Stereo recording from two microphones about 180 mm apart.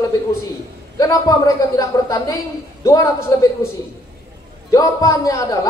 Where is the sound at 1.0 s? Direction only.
20° left (ahead or behind).